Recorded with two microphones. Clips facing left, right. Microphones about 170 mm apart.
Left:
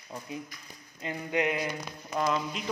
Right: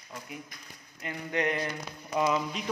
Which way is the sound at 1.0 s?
10° left (ahead or behind).